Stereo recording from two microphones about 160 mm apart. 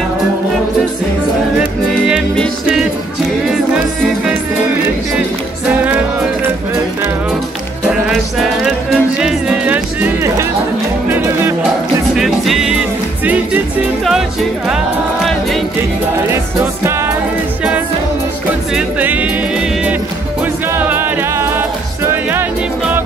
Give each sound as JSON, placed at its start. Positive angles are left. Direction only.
{"t": 1.9, "sound": "music", "side_deg": 0}
{"t": 8.1, "sound": "music", "side_deg": 0}
{"t": 12.2, "sound": "music", "side_deg": 0}
{"t": 18.8, "sound": "music", "side_deg": -10}
{"t": 20.7, "sound": "music", "side_deg": -15}